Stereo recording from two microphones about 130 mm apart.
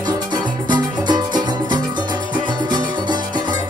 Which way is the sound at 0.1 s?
30° right (ahead or behind).